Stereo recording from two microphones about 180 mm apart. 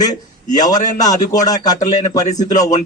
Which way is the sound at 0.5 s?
20° left (ahead or behind).